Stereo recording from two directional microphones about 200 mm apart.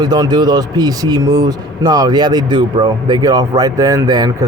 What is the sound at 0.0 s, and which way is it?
A man's voice, 20° right (ahead or behind).